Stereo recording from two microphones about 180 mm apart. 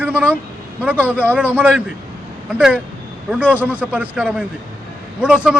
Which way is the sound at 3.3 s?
5° right (ahead or behind).